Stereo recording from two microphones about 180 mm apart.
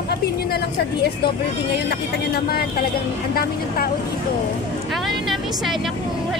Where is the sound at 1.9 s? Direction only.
60° left (ahead or behind).